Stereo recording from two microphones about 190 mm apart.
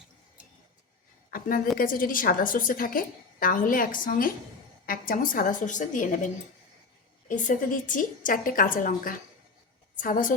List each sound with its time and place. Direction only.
1.3 s a woman's voice: 50° left (ahead or behind)